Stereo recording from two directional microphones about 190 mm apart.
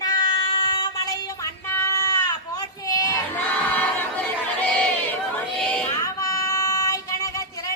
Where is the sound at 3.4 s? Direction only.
10° left (ahead or behind).